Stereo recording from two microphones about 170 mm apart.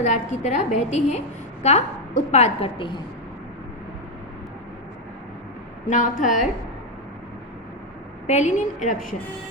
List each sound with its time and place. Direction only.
0.0 s a woman's voice: 45° left (ahead or behind)
5.9 s a woman's voice: 50° left (ahead or behind)
8.3 s a woman's voice: 45° left (ahead or behind)